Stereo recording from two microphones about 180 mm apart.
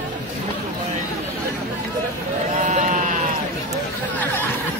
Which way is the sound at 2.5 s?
40° right (ahead or behind).